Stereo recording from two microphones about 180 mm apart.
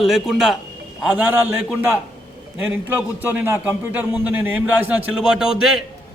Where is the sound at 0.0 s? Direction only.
Centre (ahead or behind).